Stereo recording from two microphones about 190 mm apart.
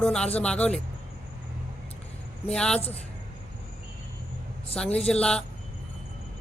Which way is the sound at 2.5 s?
5° left (ahead or behind).